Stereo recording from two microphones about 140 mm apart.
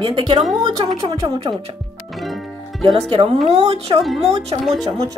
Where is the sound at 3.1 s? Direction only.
45° right (ahead or behind).